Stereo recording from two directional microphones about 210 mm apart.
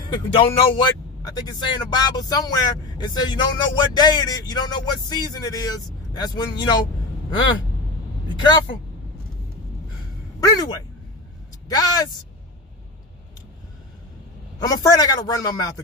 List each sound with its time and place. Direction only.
0.1 s speech: 25° left (ahead or behind)
10.4 s speech: 20° left (ahead or behind)
14.6 s speech: 15° left (ahead or behind)